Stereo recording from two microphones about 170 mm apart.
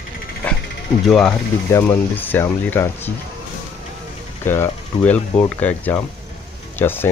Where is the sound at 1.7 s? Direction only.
15° left (ahead or behind).